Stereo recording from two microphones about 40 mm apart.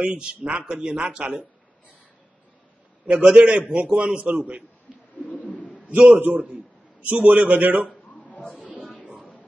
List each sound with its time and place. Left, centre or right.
0.0 s speech: right
3.3 s a man's voice: right
4.9 s bird: centre
5.2 s bird: left
5.9 s a man's voice: right
6.1 s a man's voice: right
7.1 s a man's voice: right
8.3 s a sound: left
9.0 s music: centre